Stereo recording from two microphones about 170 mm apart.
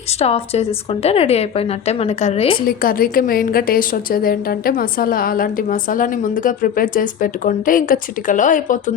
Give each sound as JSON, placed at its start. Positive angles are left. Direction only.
{"t": 0.2, "sound": "a woman's voice", "side_deg": 35}
{"t": 2.6, "sound": "a woman's voice", "side_deg": 60}